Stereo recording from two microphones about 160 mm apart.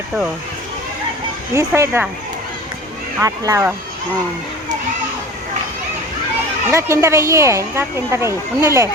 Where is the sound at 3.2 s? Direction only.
20° right (ahead or behind).